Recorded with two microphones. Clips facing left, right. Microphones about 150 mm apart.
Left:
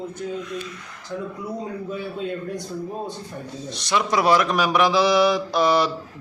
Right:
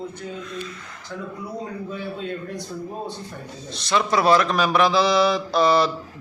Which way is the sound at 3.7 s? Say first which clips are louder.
Right 1 dB; 15° left (ahead or behind).